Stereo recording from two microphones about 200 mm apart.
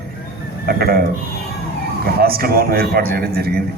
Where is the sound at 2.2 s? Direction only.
50° right (ahead or behind).